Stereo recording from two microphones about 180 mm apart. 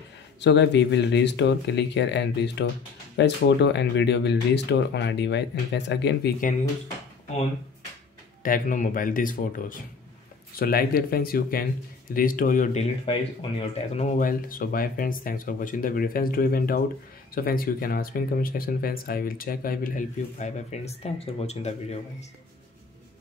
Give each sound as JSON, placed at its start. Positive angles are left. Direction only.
{"t": 0.4, "sound": "speech", "side_deg": 75}
{"t": 8.4, "sound": "speech", "side_deg": 50}
{"t": 13.0, "sound": "speech", "side_deg": 30}
{"t": 13.9, "sound": "speech", "side_deg": 45}